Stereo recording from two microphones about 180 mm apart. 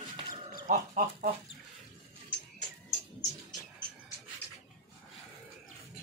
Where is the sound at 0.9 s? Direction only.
45° right (ahead or behind).